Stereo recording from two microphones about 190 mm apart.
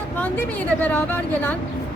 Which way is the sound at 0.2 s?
10° left (ahead or behind).